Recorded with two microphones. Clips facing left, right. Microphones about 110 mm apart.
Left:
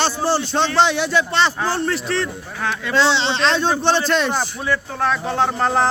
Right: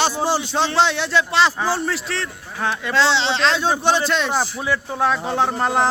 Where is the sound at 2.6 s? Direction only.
15° right (ahead or behind).